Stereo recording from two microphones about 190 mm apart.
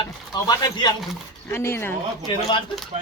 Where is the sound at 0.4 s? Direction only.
20° left (ahead or behind).